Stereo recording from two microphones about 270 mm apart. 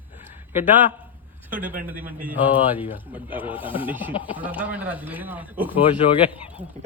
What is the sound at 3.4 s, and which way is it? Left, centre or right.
Speech, centre.